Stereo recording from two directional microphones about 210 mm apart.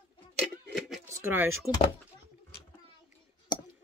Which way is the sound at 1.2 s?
10° right (ahead or behind).